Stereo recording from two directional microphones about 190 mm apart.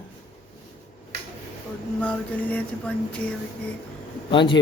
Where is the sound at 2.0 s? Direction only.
5° left (ahead or behind).